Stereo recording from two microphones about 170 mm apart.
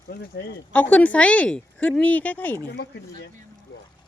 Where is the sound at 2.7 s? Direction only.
90° left.